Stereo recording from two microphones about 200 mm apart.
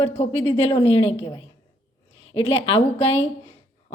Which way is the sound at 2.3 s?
30° left (ahead or behind).